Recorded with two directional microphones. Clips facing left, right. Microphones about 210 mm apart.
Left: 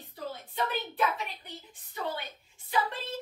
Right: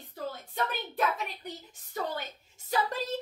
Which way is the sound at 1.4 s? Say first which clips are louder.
Right 5 dB; 45° right (ahead or behind).